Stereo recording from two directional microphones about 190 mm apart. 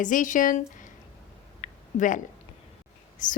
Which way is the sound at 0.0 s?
45° left (ahead or behind).